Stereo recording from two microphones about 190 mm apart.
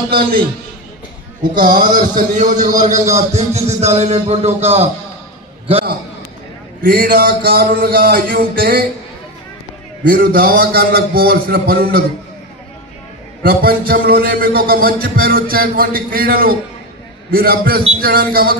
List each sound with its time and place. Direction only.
1.6 s a man's voice: 45° right (ahead or behind)
6.8 s a man's voice: 50° right (ahead or behind)
10.0 s a man's voice: 50° right (ahead or behind)
13.4 s a man's voice: 55° right (ahead or behind)